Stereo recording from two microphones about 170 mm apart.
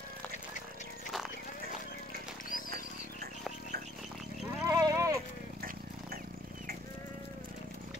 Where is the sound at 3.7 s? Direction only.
65° right (ahead or behind).